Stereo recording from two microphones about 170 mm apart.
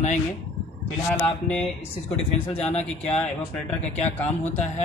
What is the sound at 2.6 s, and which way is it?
Speech, 40° left (ahead or behind).